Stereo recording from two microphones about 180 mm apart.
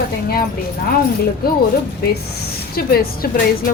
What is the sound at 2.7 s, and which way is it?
A woman's voice, 60° left (ahead or behind).